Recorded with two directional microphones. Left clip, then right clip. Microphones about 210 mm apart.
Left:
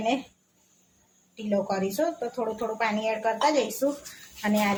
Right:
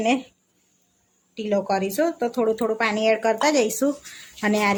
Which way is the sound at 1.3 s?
50° right (ahead or behind).